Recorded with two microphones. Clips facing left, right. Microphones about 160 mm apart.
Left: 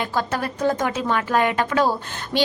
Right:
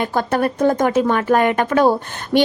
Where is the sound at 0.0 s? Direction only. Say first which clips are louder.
Right 6 dB; 50° right (ahead or behind).